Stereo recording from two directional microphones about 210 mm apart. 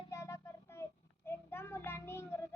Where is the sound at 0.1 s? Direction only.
15° left (ahead or behind).